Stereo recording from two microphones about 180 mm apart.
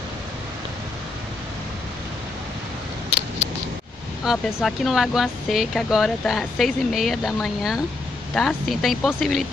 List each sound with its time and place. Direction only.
4.2 s speech: centre (ahead or behind)